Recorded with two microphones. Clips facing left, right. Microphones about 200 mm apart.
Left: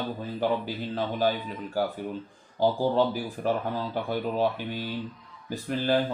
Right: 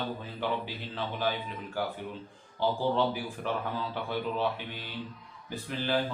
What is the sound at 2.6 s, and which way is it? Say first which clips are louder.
Speech: left 4 dB; 40° left (ahead or behind).